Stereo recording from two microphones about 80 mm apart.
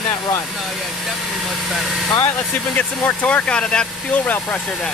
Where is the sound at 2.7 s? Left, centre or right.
Left.